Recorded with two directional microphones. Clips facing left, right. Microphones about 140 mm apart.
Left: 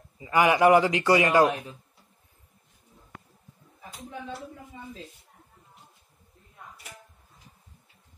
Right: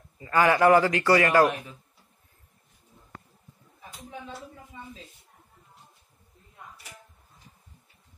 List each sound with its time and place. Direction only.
0.2 s a man's voice: 15° left (ahead or behind)